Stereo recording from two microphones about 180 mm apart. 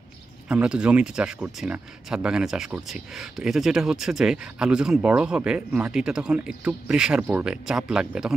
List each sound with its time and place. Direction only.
0.5 s speech: 5° right (ahead or behind)